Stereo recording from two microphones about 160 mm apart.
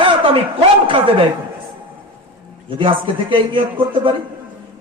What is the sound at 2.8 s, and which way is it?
A man's voice, 30° right (ahead or behind).